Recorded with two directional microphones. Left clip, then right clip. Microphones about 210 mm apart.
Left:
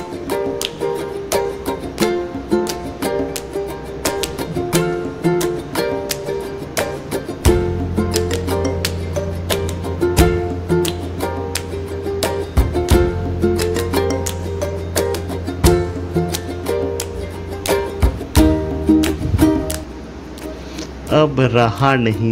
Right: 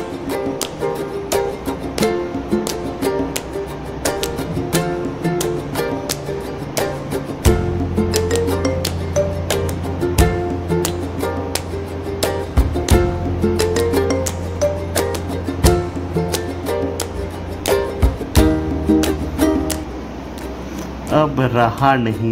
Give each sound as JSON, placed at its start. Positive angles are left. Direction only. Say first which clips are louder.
{"t": 0.3, "sound": "music", "louder": "left 3 dB", "side_deg": 0}
{"t": 21.1, "sound": "music", "louder": "left 2 dB", "side_deg": 30}